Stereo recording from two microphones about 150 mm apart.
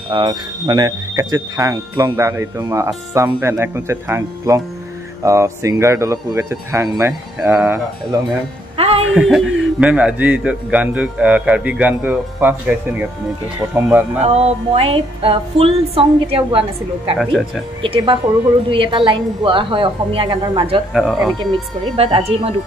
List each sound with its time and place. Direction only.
0.1 s a man's voice: 30° right (ahead or behind)
8.7 s music: 40° right (ahead or behind)
9.1 s a man's voice: centre (ahead or behind)
14.2 s music: 45° right (ahead or behind)
17.2 s speech: centre (ahead or behind)
17.8 s music: 35° right (ahead or behind)
20.9 s speech: centre (ahead or behind)
21.9 s music: 40° right (ahead or behind)